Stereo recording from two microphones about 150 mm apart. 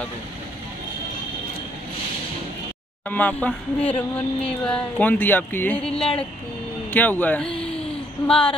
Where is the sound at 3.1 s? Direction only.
10° left (ahead or behind).